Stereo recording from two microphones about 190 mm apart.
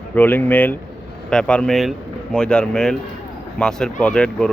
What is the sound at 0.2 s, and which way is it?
Speech, 10° left (ahead or behind).